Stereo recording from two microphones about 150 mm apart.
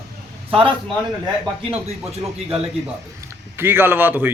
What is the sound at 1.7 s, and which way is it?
Speech, 40° right (ahead or behind).